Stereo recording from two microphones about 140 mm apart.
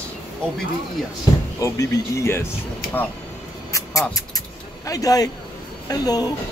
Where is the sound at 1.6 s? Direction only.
20° left (ahead or behind).